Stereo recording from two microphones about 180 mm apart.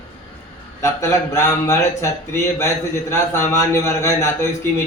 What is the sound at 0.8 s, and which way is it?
Speech, 15° left (ahead or behind).